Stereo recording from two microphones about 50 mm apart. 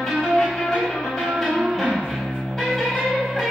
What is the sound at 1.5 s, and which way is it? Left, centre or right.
Music, centre.